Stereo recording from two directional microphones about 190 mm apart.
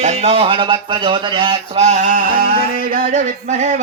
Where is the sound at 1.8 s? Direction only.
40° right (ahead or behind).